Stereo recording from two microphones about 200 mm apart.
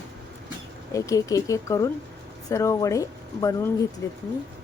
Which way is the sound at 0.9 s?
15° left (ahead or behind).